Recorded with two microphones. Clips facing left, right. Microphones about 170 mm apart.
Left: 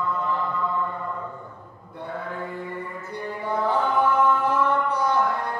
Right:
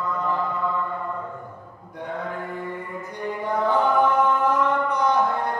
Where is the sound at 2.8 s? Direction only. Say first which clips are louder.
Right 1 dB; 10° right (ahead or behind).